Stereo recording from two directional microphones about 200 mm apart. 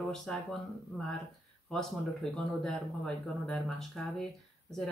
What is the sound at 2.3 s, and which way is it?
Speech, centre (ahead or behind).